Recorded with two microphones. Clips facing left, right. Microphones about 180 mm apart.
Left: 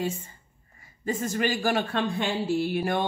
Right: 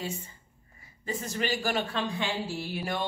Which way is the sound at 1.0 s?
50° left (ahead or behind).